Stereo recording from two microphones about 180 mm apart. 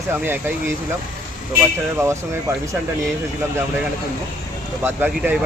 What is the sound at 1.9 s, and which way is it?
Speech, 15° right (ahead or behind).